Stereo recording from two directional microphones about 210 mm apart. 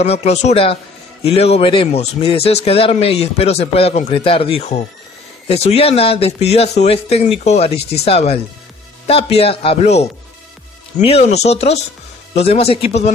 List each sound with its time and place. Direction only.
0.0 s speech: 30° left (ahead or behind)
11.1 s speech: 30° left (ahead or behind)